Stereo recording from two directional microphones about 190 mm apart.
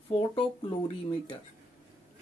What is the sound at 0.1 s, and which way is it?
Speech, 30° left (ahead or behind).